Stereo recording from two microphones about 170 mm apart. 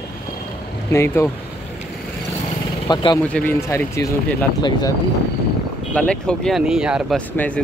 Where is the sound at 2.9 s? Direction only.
25° left (ahead or behind).